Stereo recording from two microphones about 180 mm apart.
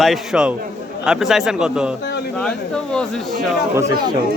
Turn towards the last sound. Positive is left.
turn(degrees=-15)  # may be behind; listen again after turning